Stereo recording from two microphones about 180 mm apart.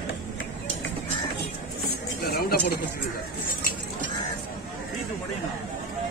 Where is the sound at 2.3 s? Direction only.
60° left (ahead or behind).